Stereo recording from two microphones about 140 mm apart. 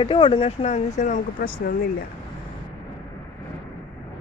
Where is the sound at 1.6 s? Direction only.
90° left.